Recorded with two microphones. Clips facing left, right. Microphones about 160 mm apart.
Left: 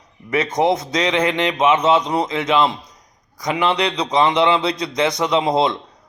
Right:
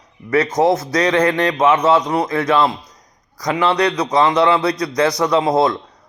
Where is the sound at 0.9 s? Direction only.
25° left (ahead or behind).